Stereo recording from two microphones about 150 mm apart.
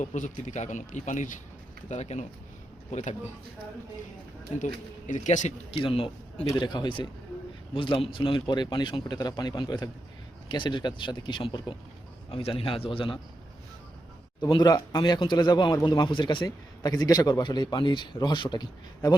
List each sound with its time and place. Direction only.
0.0 s a man's voice: 55° left (ahead or behind)
4.6 s a man's voice: 55° left (ahead or behind); by 13.1 s 35° left (ahead or behind)
14.5 s a man's voice: 30° left (ahead or behind)